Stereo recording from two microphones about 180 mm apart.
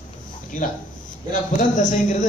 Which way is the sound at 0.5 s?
45° left (ahead or behind).